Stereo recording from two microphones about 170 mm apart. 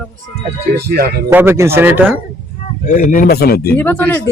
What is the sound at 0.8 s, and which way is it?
Speech, 65° right (ahead or behind).